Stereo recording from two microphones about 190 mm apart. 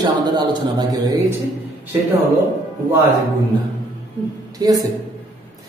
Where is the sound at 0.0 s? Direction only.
20° right (ahead or behind).